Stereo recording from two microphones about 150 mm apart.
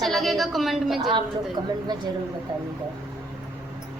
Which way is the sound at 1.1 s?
30° right (ahead or behind).